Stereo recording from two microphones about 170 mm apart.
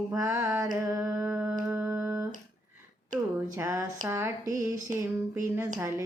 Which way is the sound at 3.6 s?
15° right (ahead or behind).